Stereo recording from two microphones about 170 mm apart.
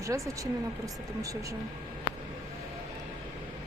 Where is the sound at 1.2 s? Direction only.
20° right (ahead or behind).